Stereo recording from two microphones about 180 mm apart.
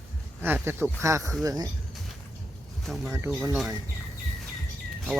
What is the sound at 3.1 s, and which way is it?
Speech, 15° right (ahead or behind).